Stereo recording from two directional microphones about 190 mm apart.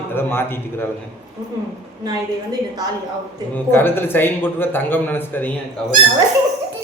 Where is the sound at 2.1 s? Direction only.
20° right (ahead or behind).